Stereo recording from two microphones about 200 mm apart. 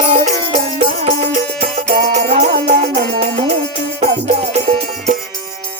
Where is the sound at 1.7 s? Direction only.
35° right (ahead or behind).